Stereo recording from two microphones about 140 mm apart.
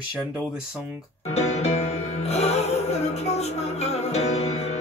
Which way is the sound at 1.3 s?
50° left (ahead or behind).